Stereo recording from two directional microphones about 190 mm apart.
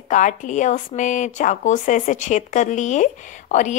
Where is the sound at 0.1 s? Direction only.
40° left (ahead or behind).